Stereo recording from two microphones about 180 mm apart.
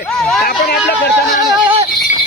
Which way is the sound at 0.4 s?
65° left (ahead or behind).